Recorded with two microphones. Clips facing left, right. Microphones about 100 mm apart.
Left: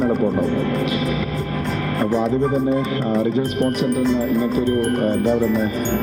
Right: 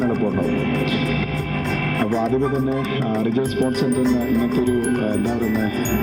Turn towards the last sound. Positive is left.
turn(degrees=10)  # may be behind; listen again after turning